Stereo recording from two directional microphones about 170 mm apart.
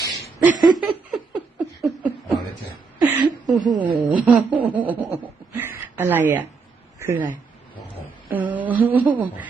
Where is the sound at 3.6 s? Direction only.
25° right (ahead or behind).